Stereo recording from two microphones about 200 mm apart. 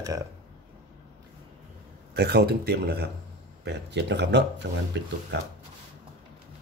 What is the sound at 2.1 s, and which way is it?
Speech, 55° right (ahead or behind).